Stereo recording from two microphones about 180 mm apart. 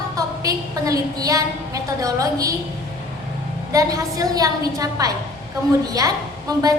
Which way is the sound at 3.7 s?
20° right (ahead or behind).